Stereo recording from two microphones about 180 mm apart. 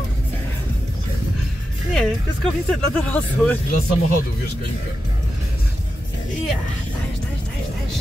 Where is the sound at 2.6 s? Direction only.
5° left (ahead or behind).